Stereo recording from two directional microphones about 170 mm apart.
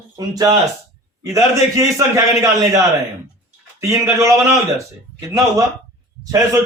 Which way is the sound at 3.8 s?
20° right (ahead or behind).